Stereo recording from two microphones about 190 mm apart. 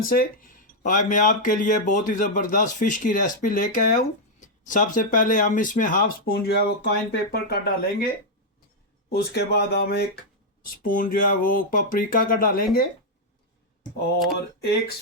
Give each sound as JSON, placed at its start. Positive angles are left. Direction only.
{"t": 0.0, "sound": "speech", "side_deg": 50}
{"t": 9.0, "sound": "speech", "side_deg": 55}
{"t": 10.8, "sound": "speech", "side_deg": 45}
{"t": 14.3, "sound": "speech", "side_deg": 55}